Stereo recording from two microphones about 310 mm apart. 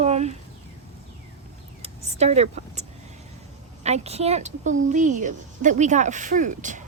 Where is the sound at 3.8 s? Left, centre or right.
Right.